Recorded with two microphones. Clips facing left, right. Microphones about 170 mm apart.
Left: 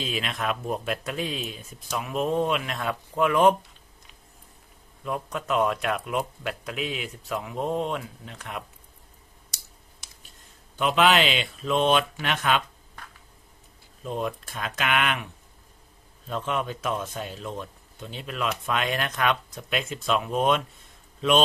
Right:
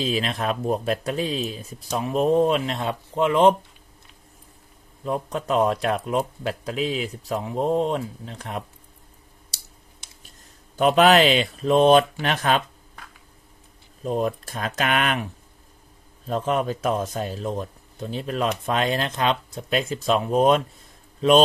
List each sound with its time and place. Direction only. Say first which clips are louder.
0.0 s a man's voice: right 5 dB; 35° right (ahead or behind)
5.0 s a man's voice: right 4 dB; 35° right (ahead or behind)
10.8 s a man's voice: right 5 dB; 40° right (ahead or behind)
14.0 s a man's voice: right 6 dB; 40° right (ahead or behind)
16.3 s a man's voice: right 5 dB; 40° right (ahead or behind)